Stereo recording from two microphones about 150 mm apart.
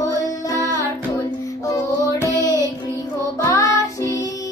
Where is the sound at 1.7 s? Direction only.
20° left (ahead or behind).